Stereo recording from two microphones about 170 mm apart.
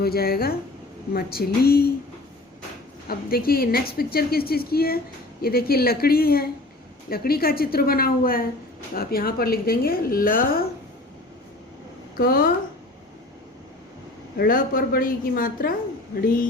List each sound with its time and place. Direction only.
0.0 s speech: 65° left (ahead or behind)
3.1 s speech: 60° left (ahead or behind)
12.1 s speech: 60° left (ahead or behind)
14.3 s speech: 60° left (ahead or behind)